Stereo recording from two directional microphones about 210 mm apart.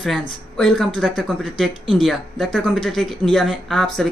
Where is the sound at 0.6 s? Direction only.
Centre (ahead or behind).